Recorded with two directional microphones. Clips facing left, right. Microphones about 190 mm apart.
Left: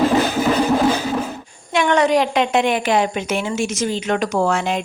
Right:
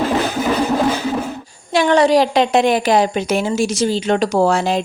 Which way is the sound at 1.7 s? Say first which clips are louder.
Right 3 dB; 35° right (ahead or behind).